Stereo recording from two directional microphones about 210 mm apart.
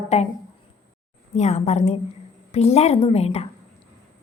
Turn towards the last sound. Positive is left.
turn(degrees=30)  # may be behind; listen again after turning